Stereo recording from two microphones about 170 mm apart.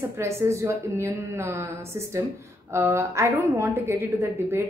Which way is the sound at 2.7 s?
15° right (ahead or behind).